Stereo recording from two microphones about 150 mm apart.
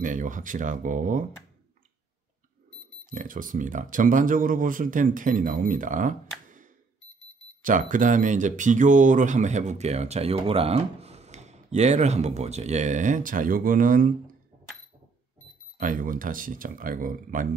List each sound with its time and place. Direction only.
0.0 s speech: 60° right (ahead or behind)
3.1 s speech: 60° right (ahead or behind)
6.4 s a sound: 60° right (ahead or behind)
7.6 s speech: 60° right (ahead or behind)
15.8 s speech: 65° right (ahead or behind)